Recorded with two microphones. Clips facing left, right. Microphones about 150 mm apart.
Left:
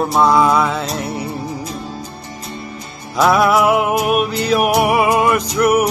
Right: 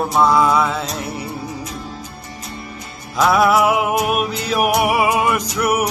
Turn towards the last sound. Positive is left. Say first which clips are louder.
# left 5 dB
turn(degrees=-5)  # may be behind; listen again after turning